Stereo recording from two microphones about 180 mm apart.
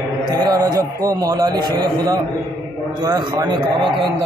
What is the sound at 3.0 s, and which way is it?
Speech, 25° right (ahead or behind).